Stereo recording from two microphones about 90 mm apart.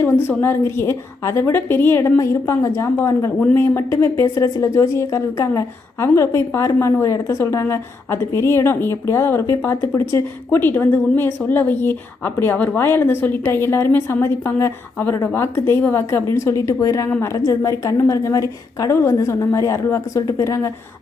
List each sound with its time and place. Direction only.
0.0 s a woman's voice: 25° left (ahead or behind)
6.7 s a woman's voice: 25° left (ahead or behind)